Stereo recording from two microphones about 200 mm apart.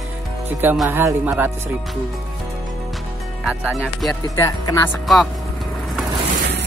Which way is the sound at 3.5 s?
5° right (ahead or behind).